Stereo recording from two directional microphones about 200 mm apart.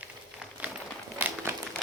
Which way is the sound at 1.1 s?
10° right (ahead or behind).